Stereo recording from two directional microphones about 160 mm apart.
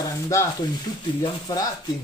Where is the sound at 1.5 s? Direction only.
25° left (ahead or behind).